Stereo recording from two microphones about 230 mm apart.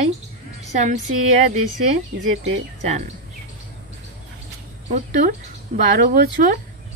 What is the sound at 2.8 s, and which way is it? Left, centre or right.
Speech, right.